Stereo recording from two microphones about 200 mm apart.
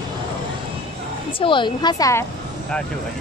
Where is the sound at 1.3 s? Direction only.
25° left (ahead or behind).